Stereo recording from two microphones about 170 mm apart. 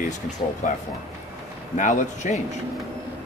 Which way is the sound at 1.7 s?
45° left (ahead or behind).